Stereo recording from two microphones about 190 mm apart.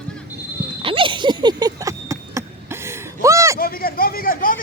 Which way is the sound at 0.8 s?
25° right (ahead or behind).